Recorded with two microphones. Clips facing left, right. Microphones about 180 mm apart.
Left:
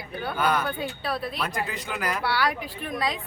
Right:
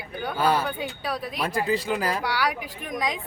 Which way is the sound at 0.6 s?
10° right (ahead or behind).